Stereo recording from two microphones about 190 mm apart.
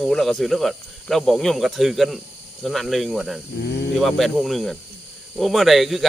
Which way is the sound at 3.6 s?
60° left (ahead or behind).